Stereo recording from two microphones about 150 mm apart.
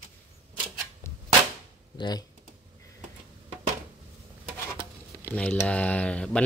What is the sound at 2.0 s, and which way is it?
Speech, 25° left (ahead or behind).